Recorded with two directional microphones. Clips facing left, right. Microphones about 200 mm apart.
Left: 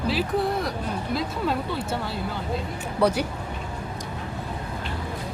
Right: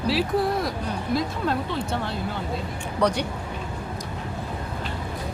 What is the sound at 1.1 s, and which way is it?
Speech, 5° left (ahead or behind).